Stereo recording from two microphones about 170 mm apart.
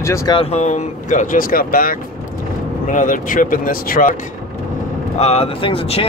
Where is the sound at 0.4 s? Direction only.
40° left (ahead or behind).